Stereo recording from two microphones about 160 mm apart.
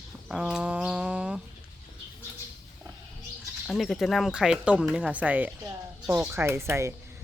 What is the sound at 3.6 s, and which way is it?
Speech, centre (ahead or behind).